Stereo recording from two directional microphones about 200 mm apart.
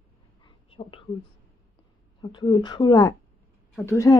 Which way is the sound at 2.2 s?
25° left (ahead or behind).